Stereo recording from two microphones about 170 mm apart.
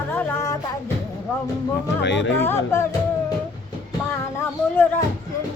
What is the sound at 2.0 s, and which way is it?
Speech, 90° left.